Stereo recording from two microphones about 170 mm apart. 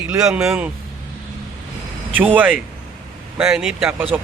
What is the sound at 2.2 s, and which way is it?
Speech, 10° right (ahead or behind).